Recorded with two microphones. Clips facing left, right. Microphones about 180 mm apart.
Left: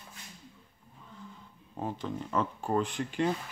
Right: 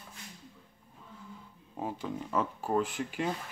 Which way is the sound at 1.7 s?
10° right (ahead or behind).